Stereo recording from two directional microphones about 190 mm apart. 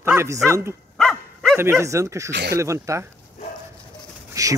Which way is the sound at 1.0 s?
5° left (ahead or behind).